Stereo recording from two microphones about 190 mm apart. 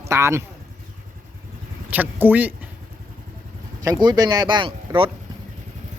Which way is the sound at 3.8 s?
20° right (ahead or behind).